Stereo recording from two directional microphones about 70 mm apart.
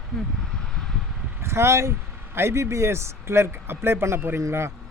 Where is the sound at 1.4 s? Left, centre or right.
Right.